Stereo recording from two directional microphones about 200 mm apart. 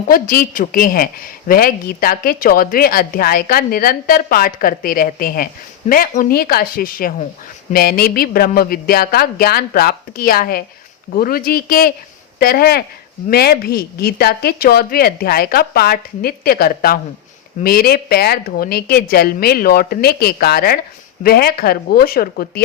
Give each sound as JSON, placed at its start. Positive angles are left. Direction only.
{"t": 0.1, "sound": "a woman's voice", "side_deg": 45}